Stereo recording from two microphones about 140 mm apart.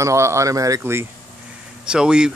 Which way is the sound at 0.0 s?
20° right (ahead or behind).